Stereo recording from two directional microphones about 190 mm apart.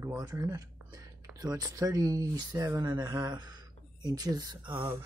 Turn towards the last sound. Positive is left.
turn(degrees=-20)  # may be behind; listen again after turning